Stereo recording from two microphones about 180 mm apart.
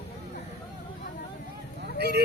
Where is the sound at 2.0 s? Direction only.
65° right (ahead or behind).